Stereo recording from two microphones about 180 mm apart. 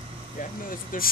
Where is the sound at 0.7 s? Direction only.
50° left (ahead or behind).